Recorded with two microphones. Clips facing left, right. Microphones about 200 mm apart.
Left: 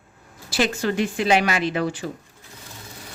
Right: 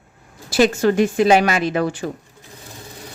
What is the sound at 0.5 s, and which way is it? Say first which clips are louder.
Speech: right 7 dB; 50° right (ahead or behind).